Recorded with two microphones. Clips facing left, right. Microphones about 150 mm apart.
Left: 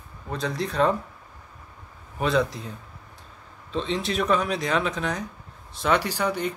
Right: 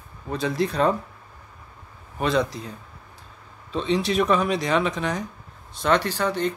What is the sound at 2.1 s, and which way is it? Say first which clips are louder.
Speech: even; centre (ahead or behind).